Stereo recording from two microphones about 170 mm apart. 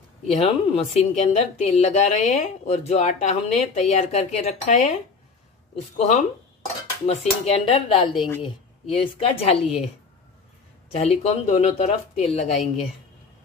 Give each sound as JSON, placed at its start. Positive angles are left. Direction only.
{"t": 0.3, "sound": "a woman's voice", "side_deg": 35}
{"t": 5.9, "sound": "a woman's voice", "side_deg": 40}
{"t": 10.9, "sound": "a woman's voice", "side_deg": 40}